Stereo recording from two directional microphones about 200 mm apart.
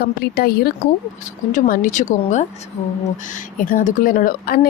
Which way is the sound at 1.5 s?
40° left (ahead or behind).